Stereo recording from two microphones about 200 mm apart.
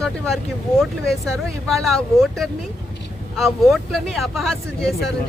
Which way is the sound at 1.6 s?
Centre (ahead or behind).